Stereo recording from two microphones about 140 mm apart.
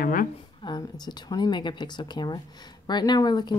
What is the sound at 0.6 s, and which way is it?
Speech, 30° left (ahead or behind).